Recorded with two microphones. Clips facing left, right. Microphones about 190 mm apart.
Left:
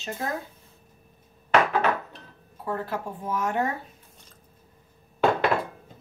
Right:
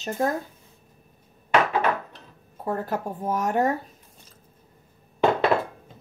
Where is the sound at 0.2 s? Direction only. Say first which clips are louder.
Right 7 dB; 45° right (ahead or behind).